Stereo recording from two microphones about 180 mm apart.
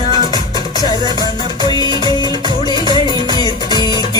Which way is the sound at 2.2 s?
25° right (ahead or behind).